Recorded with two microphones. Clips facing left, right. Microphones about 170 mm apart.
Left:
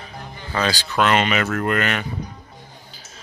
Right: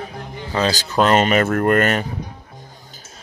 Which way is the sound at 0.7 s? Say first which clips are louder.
Right 3 dB; 40° right (ahead or behind).